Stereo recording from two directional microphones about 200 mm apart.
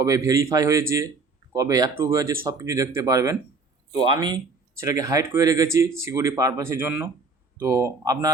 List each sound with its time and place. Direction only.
0.0 s speech: 15° right (ahead or behind)